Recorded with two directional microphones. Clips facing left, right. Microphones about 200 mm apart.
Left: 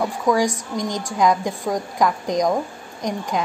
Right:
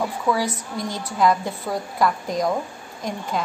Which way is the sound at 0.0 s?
15° left (ahead or behind).